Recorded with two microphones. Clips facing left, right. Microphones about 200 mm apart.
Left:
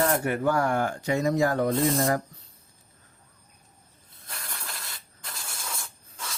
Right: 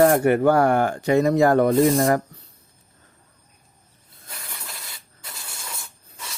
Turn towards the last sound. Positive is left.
turn(degrees=-5)  # may be behind; listen again after turning